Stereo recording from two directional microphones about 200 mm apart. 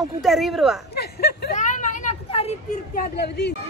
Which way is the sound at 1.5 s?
40° left (ahead or behind).